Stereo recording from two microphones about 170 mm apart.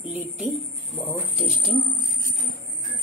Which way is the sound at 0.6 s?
Centre (ahead or behind).